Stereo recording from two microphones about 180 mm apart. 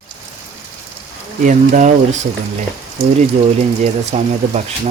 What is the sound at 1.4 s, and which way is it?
Speech, 45° right (ahead or behind).